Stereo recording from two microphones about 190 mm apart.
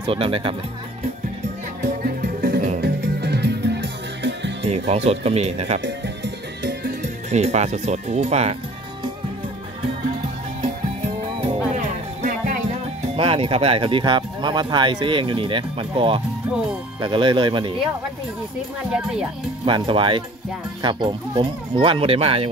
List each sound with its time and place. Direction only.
0.0 s speech: 30° right (ahead or behind)
1.8 s music: 55° right (ahead or behind)
2.8 s music: 60° right (ahead or behind)
4.6 s speech: 35° right (ahead or behind)
5.8 s music: 65° right (ahead or behind); by 8.5 s 35° right (ahead or behind)
11.7 s music: 40° right (ahead or behind)
13.1 s speech: 30° right (ahead or behind)
18.9 s speech: 5° right (ahead or behind)
19.6 s speech: 25° right (ahead or behind)